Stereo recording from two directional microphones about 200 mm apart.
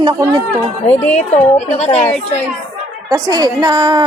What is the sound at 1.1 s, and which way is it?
Speech, 35° left (ahead or behind).